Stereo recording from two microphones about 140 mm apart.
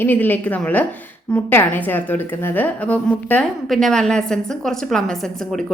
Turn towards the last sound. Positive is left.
turn(degrees=0)  # may be behind; listen again after turning